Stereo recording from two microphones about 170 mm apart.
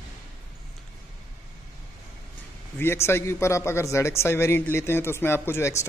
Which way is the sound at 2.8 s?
15° left (ahead or behind).